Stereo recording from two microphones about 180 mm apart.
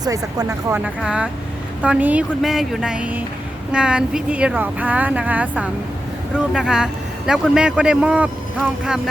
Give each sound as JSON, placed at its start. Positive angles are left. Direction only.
{"t": 0.0, "sound": "speech", "side_deg": -20}
{"t": 1.0, "sound": "a man's voice", "side_deg": -5}